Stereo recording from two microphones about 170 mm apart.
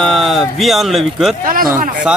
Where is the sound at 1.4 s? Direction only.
55° right (ahead or behind).